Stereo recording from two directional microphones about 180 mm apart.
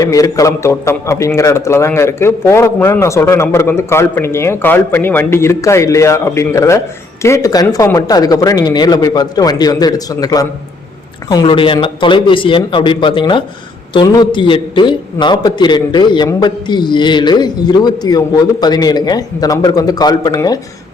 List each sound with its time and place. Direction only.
0.0 s a man's voice: 20° left (ahead or behind)